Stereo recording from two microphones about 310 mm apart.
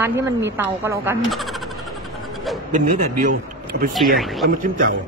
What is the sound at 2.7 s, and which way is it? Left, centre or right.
A man's voice, right.